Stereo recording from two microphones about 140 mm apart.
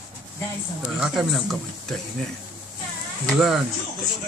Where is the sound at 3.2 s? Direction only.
Centre (ahead or behind).